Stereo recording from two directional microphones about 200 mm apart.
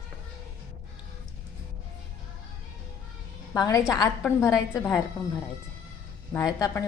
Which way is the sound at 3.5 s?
15° left (ahead or behind).